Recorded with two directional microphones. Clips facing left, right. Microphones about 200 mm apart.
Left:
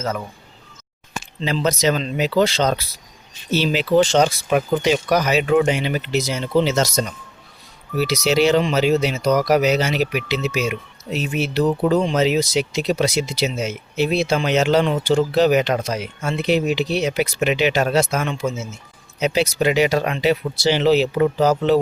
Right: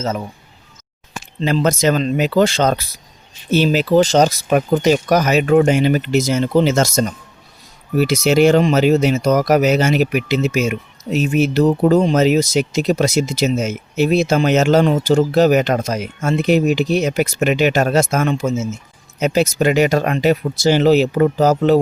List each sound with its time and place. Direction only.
0.0 s speech: 25° right (ahead or behind)
1.4 s speech: 50° right (ahead or behind)